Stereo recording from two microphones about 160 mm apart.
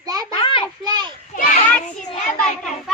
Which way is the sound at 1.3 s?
55° left (ahead or behind).